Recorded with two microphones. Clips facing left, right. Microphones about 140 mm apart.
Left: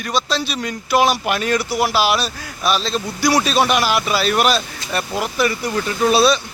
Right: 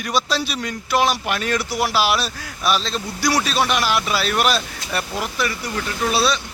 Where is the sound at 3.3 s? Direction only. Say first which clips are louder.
Left 4 dB; 20° left (ahead or behind); by 5.0 s 5° right (ahead or behind).